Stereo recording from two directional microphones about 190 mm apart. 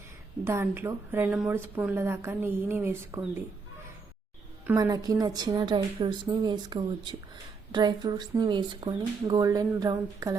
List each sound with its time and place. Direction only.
0.4 s speech: 10° right (ahead or behind)
4.6 s speech: 15° right (ahead or behind)